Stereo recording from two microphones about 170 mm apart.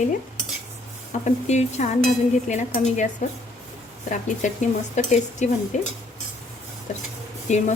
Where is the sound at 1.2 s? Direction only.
40° left (ahead or behind).